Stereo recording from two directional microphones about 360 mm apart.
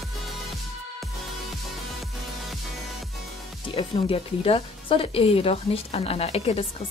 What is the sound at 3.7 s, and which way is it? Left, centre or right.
Speech, centre.